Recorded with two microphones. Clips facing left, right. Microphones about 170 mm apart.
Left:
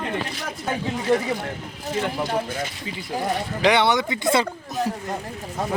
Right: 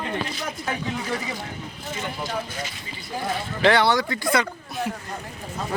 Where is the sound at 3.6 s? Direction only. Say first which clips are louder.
Even; 15° left (ahead or behind).